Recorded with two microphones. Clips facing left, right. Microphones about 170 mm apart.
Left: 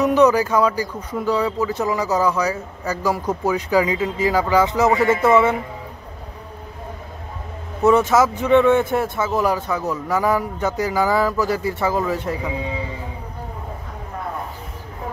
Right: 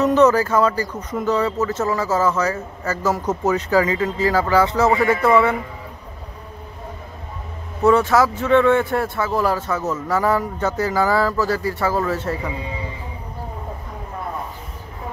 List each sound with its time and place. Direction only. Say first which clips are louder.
0.0 s a man's voice: even; 15° left (ahead or behind)
7.8 s speech: even; 20° left (ahead or behind)